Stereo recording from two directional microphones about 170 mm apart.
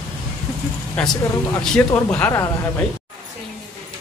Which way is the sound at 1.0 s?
5° left (ahead or behind).